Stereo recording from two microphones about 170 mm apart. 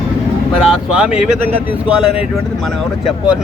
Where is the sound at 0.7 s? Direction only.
5° right (ahead or behind).